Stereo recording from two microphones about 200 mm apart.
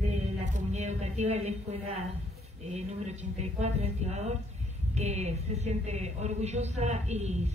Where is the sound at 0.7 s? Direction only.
35° right (ahead or behind).